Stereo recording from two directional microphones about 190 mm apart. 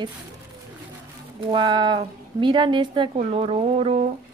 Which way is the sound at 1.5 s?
25° right (ahead or behind).